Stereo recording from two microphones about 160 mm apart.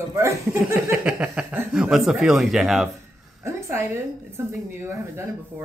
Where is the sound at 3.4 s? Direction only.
15° right (ahead or behind).